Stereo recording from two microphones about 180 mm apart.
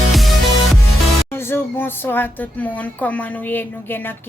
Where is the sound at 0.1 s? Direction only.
Centre (ahead or behind).